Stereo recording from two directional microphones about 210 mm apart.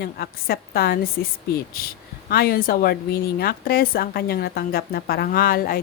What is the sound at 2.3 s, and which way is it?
Speech, 45° left (ahead or behind).